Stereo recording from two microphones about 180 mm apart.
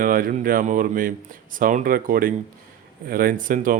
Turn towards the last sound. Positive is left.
turn(degrees=-50)  # may be behind; listen again after turning